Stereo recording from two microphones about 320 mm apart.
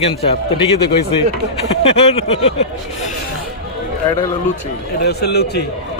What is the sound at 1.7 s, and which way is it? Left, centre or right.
Speech, centre.